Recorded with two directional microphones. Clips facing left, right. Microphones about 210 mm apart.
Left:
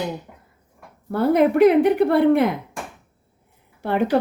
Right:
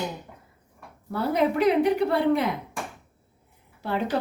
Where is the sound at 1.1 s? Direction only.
55° left (ahead or behind).